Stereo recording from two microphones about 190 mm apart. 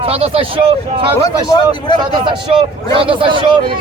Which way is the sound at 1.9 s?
25° right (ahead or behind).